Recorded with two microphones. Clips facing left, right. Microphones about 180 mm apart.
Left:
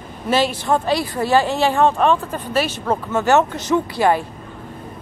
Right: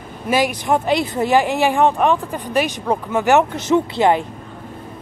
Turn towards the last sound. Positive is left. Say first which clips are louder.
# right 2 dB
turn(degrees=-20)  # may be behind; listen again after turning